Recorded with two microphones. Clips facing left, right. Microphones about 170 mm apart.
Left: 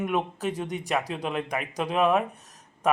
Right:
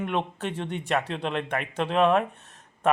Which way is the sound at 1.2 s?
5° left (ahead or behind).